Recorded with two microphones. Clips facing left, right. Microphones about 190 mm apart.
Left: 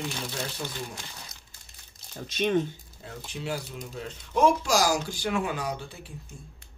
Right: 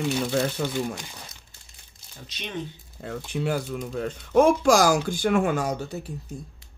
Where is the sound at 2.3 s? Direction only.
50° left (ahead or behind).